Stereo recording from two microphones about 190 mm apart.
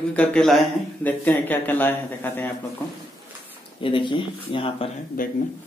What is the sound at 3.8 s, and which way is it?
Speech, 25° left (ahead or behind).